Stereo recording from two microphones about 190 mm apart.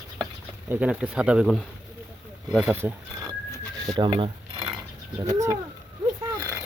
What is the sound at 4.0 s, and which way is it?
Speech, 25° right (ahead or behind).